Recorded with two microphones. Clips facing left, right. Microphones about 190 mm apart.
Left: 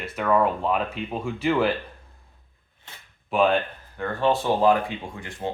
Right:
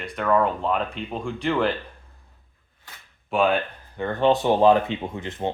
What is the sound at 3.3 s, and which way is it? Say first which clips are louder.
Speech: even; centre (ahead or behind).